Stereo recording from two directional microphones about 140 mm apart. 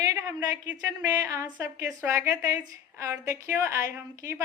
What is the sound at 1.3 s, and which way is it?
A woman's voice, 20° right (ahead or behind).